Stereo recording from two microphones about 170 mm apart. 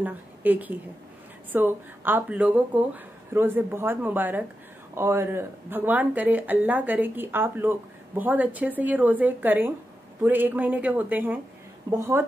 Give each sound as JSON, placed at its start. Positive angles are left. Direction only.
{"t": 0.0, "sound": "a woman's voice", "side_deg": -10}